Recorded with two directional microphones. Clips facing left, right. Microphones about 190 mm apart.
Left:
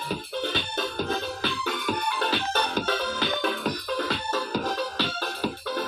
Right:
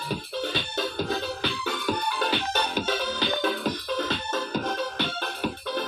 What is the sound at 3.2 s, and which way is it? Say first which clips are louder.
Music: right 1 dB; 25° right (ahead or behind).